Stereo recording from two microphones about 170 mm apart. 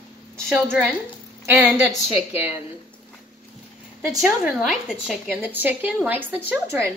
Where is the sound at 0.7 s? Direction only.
10° right (ahead or behind).